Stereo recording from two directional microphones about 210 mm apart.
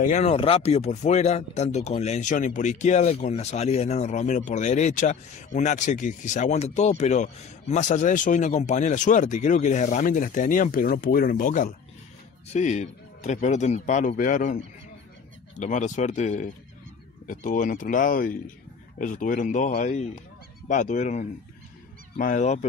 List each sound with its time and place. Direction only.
0.0 s speech: 35° left (ahead or behind)